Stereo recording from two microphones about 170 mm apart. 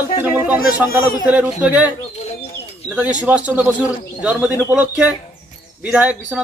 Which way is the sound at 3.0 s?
10° right (ahead or behind).